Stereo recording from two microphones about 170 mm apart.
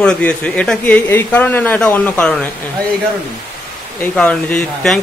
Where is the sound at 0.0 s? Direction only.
5° left (ahead or behind).